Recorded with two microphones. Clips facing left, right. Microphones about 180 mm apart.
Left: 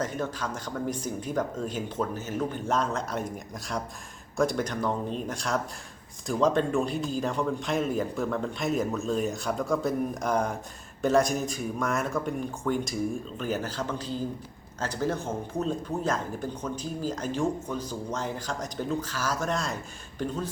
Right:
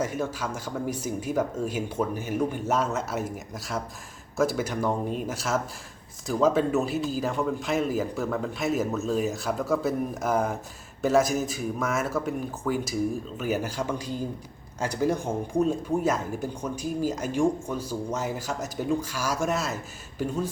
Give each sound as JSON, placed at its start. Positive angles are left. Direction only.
{"t": 0.0, "sound": "a man's voice", "side_deg": -10}